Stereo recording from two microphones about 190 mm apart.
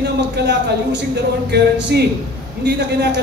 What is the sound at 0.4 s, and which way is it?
A man's voice, 60° right (ahead or behind).